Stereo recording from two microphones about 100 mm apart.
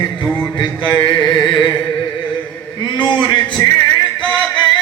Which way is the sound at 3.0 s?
50° left (ahead or behind).